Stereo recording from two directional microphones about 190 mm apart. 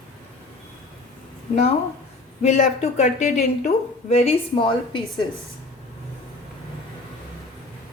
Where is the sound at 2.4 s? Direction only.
35° left (ahead or behind).